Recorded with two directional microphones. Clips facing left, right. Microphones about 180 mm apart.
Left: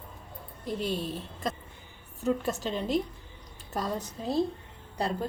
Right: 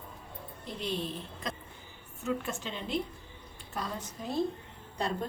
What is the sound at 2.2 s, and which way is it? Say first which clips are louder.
A woman's voice: left 5 dB; 40° left (ahead or behind).